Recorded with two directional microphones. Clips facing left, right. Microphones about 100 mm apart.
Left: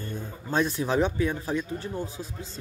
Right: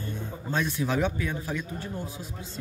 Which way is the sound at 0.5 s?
35° left (ahead or behind).